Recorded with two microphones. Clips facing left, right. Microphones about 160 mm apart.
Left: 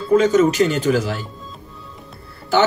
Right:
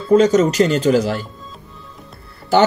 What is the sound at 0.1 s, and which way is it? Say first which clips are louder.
Speech: right 2 dB; 35° right (ahead or behind).